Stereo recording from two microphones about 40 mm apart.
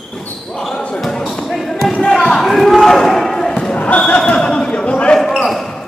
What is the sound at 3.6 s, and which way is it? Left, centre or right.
Basketball bounce, left.